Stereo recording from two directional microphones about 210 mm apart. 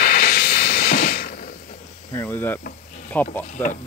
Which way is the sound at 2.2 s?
10° left (ahead or behind).